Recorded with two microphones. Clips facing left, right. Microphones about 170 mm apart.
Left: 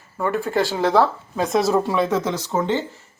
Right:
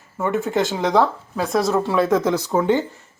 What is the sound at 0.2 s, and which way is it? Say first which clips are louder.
Speech: right 1 dB; 20° right (ahead or behind).